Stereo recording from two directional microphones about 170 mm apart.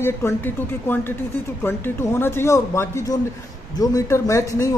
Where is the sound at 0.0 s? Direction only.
15° left (ahead or behind).